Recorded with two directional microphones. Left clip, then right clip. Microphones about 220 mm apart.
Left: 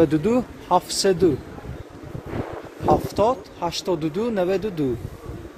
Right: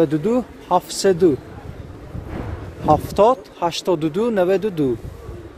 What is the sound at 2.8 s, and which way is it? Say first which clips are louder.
Speech: right 5 dB; 45° right (ahead or behind).